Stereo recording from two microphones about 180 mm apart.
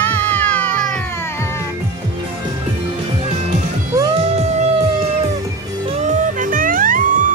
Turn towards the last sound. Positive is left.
turn(degrees=-50)  # may be behind; listen again after turning